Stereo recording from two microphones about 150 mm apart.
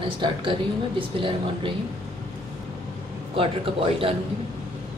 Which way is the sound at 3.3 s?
35° right (ahead or behind).